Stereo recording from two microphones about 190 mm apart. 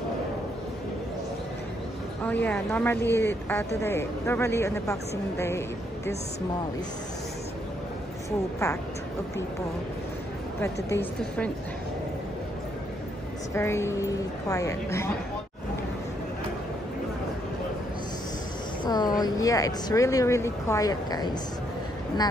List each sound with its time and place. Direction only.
2.2 s speech: 10° left (ahead or behind)
10.6 s speech: 10° left (ahead or behind)
13.6 s speech: 15° left (ahead or behind)
18.9 s speech: 20° left (ahead or behind)